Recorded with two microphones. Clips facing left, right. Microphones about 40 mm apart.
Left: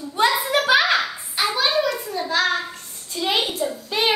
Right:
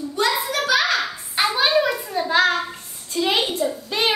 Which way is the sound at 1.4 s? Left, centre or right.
Right.